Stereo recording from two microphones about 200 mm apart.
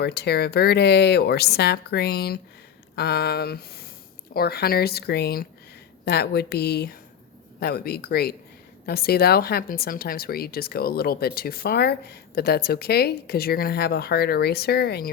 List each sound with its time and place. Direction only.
0.0 s speech: 55° left (ahead or behind)